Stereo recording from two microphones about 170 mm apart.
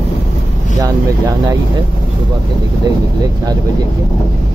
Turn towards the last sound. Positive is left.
turn(degrees=-20)  # may be behind; listen again after turning